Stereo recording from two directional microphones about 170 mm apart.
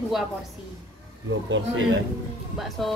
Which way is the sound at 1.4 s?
90° right.